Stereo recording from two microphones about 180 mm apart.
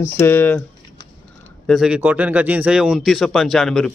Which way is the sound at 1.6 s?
Centre (ahead or behind).